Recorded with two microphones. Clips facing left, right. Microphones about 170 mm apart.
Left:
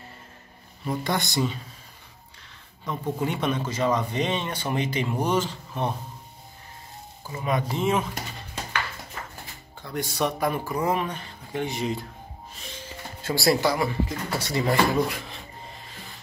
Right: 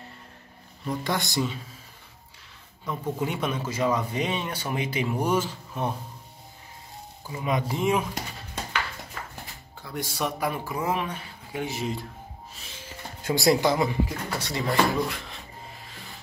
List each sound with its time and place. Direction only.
0.8 s speech: centre (ahead or behind)
2.9 s speech: 5° right (ahead or behind)
7.2 s speech: 15° right (ahead or behind)
9.4 s speech: centre (ahead or behind)
13.2 s speech: 20° right (ahead or behind)
14.9 s speech: centre (ahead or behind)
15.9 s rub: centre (ahead or behind)